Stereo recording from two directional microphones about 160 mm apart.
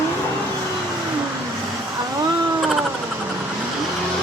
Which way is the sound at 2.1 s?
25° right (ahead or behind).